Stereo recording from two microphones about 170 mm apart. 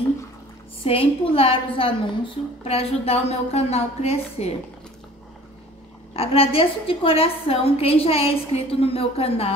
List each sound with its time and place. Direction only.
0.8 s a woman's voice: 35° left (ahead or behind)
6.1 s a woman's voice: 35° left (ahead or behind)